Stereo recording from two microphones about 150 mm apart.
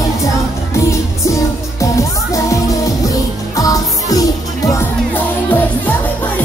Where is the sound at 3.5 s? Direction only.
25° left (ahead or behind).